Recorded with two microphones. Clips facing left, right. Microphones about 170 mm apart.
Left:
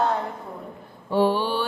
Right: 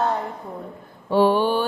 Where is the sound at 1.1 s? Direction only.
90° right.